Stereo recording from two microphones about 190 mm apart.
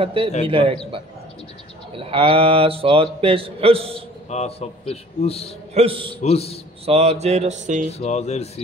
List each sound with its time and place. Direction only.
0.0 s a man's voice: 30° right (ahead or behind)
2.0 s a man's voice: 30° right (ahead or behind)
4.3 s a man's voice: 35° left (ahead or behind)
5.8 s a man's voice: 30° right (ahead or behind)
6.2 s a man's voice: 30° left (ahead or behind)
6.9 s mantra: 35° right (ahead or behind)
8.0 s a man's voice: 35° left (ahead or behind)